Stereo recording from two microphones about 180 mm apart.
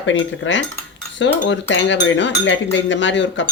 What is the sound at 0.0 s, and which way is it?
Speech, 90° left.